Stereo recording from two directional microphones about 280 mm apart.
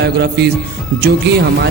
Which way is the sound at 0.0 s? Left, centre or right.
Right.